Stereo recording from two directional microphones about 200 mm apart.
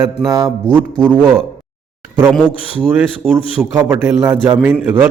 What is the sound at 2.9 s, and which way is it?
A man's voice, 10° right (ahead or behind).